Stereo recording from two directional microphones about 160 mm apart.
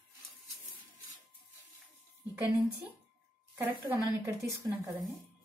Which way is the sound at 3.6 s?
15° right (ahead or behind).